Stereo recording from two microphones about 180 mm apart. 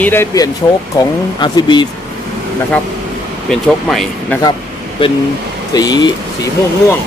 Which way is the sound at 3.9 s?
Centre (ahead or behind).